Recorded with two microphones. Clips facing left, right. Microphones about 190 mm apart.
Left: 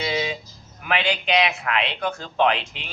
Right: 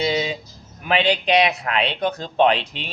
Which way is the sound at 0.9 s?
35° right (ahead or behind).